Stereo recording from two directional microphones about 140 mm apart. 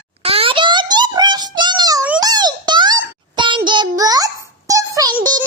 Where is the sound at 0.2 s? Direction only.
45° right (ahead or behind).